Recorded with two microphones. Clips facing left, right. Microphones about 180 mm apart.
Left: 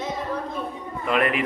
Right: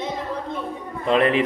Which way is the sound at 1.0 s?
30° right (ahead or behind).